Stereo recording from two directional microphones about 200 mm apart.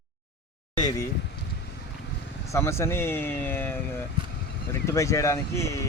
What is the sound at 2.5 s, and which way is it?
Speech, 15° left (ahead or behind).